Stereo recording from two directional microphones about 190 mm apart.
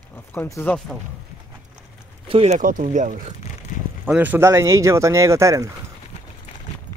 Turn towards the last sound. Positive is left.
turn(degrees=-15)  # may be behind; listen again after turning